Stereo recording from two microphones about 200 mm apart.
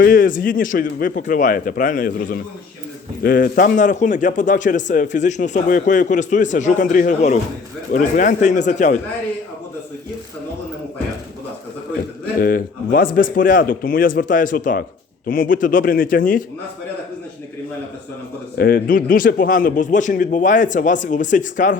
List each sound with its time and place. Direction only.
0.0 s a man's voice: 45° left (ahead or behind)
12.4 s a man's voice: 45° left (ahead or behind)
18.5 s a man's voice: 50° left (ahead or behind)